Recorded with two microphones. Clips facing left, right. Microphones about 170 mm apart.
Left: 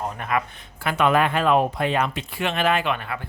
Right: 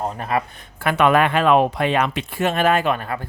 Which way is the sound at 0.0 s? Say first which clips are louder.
Right 3 dB; 35° right (ahead or behind).